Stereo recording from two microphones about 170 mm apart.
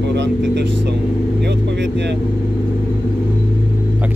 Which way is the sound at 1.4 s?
85° right.